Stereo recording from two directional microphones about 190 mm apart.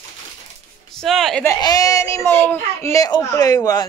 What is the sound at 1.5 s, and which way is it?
A child's voice, 20° left (ahead or behind).